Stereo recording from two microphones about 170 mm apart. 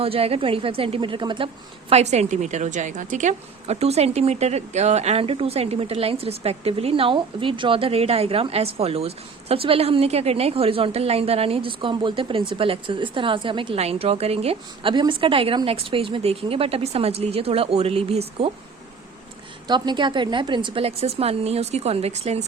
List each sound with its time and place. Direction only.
0.0 s a woman's voice: 35° right (ahead or behind)
1.9 s a woman's voice: 40° right (ahead or behind)
19.6 s a woman's voice: 25° right (ahead or behind)